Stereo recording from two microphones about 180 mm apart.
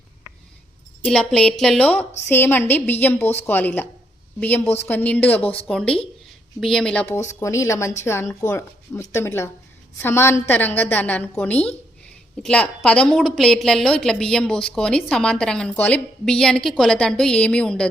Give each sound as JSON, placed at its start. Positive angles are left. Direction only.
{"t": 1.0, "sound": "a woman's voice", "side_deg": 5}
{"t": 7.3, "sound": "a woman's voice", "side_deg": 15}